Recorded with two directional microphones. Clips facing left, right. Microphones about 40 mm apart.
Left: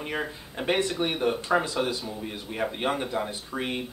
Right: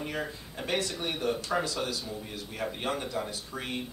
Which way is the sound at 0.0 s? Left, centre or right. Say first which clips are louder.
Left 3 dB; left.